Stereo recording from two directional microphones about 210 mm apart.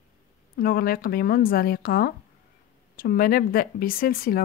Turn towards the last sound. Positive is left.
turn(degrees=45)  # may be behind; listen again after turning